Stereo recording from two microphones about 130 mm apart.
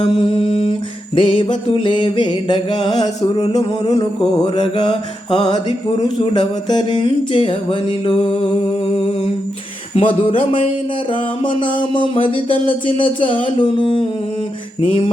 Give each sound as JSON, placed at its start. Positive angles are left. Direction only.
{"t": 0.0, "sound": "music", "side_deg": 45}
{"t": 9.9, "sound": "speech", "side_deg": 45}
{"t": 11.9, "sound": "music", "side_deg": 40}
{"t": 14.8, "sound": "speech", "side_deg": 50}